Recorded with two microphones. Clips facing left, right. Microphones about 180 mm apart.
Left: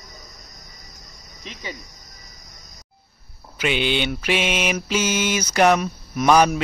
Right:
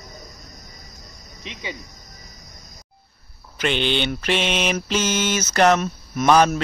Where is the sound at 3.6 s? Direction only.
10° left (ahead or behind).